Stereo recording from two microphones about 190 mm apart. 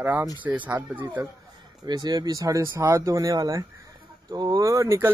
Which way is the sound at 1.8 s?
20° right (ahead or behind).